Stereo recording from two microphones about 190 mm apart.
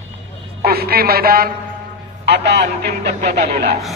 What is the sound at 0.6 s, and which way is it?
A man's voice, 55° right (ahead or behind).